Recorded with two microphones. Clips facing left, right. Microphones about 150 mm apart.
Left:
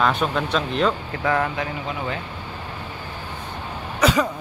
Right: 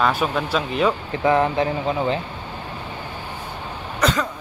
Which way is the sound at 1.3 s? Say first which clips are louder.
Right 5 dB; 20° right (ahead or behind).